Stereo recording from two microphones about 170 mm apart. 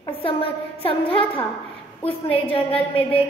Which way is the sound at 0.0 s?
30° left (ahead or behind).